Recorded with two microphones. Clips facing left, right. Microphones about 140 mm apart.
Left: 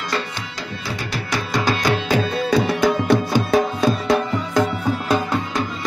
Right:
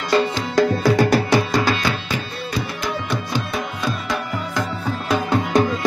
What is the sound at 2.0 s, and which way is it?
Music, 90° left.